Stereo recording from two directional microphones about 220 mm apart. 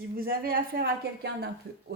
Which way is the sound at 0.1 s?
40° right (ahead or behind).